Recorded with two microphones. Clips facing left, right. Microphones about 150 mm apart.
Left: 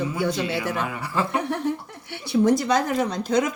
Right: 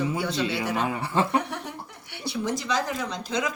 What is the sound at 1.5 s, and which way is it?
A woman's voice, 50° left (ahead or behind).